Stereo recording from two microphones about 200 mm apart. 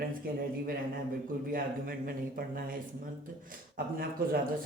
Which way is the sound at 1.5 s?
45° right (ahead or behind).